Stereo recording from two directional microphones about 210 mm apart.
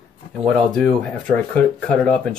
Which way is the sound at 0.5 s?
Centre (ahead or behind).